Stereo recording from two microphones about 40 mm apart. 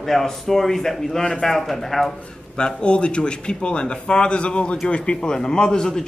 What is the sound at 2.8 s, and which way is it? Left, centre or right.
A man's voice, left.